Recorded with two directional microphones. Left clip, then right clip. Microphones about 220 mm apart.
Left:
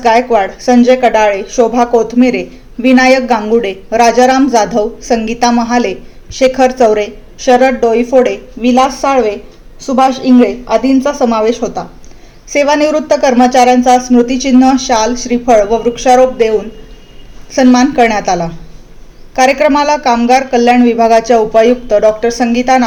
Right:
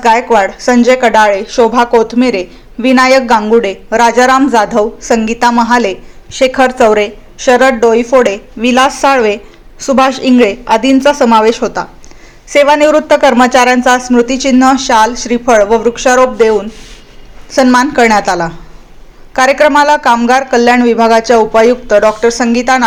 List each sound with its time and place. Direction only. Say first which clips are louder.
0.0 s speech: right 1 dB; 15° right (ahead or behind)
4.4 s speech: right 1 dB; 30° right (ahead or behind)
5.0 s speech: right 2 dB; 15° right (ahead or behind)